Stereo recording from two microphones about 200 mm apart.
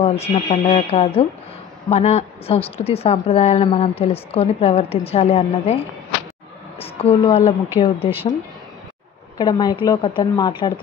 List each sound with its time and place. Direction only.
0.0 s a woman's voice: 30° left (ahead or behind)
6.8 s a woman's voice: 30° left (ahead or behind)
9.4 s a woman's voice: 20° left (ahead or behind)